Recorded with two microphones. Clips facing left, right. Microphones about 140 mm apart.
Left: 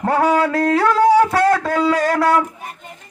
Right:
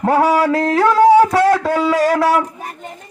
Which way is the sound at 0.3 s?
Centre (ahead or behind).